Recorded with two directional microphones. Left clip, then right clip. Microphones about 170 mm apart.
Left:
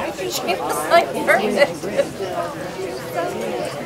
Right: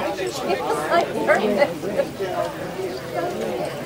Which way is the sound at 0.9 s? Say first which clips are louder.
Left 4 dB; 35° left (ahead or behind).